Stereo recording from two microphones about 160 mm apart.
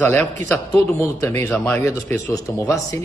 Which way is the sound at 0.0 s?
10° left (ahead or behind).